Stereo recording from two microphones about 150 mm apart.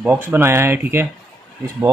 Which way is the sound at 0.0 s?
15° right (ahead or behind).